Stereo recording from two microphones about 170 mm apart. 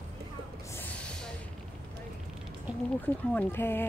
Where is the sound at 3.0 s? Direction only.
10° left (ahead or behind).